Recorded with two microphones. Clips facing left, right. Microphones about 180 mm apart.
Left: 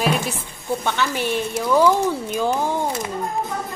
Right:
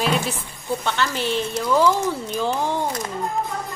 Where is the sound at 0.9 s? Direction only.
15° left (ahead or behind).